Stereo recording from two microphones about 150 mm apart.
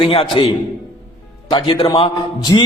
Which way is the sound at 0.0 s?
40° left (ahead or behind).